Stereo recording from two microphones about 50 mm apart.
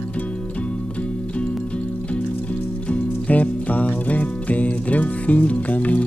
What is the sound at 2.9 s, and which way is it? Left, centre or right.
Music, left.